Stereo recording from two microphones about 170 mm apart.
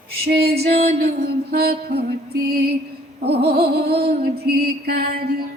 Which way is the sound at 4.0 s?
65° right (ahead or behind).